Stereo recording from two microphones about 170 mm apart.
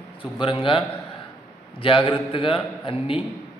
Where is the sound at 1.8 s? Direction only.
30° left (ahead or behind).